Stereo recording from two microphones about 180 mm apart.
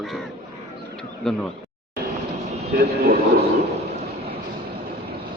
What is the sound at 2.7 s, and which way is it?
Speech, 60° right (ahead or behind).